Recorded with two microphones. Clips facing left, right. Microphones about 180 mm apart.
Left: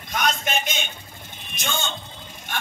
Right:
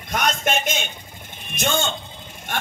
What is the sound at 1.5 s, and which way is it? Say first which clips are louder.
Speech: right 6 dB; 55° right (ahead or behind).